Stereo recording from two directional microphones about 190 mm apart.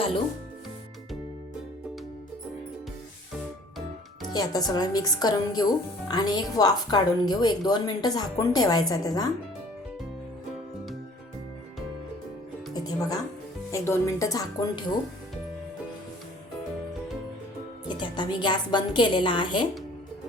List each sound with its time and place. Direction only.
4.3 s a woman's voice: 20° left (ahead or behind)
12.7 s music: 20° left (ahead or behind)
13.7 s speech: 15° left (ahead or behind)
17.8 s a woman's voice: 25° left (ahead or behind)